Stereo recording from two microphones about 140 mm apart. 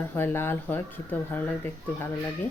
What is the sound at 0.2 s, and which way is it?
Speech, 15° left (ahead or behind).